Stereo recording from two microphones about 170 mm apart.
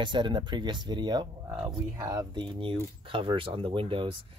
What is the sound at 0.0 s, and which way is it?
Speech, 25° right (ahead or behind).